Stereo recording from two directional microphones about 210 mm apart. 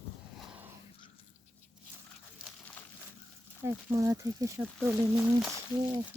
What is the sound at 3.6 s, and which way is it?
Speech, 15° right (ahead or behind).